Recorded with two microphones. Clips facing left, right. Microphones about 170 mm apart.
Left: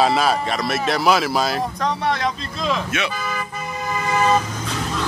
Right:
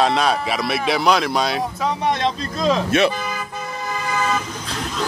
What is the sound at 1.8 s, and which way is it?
Speech, 20° right (ahead or behind).